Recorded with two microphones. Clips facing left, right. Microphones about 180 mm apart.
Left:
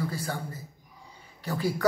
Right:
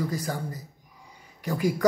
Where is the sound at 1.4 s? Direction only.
15° right (ahead or behind).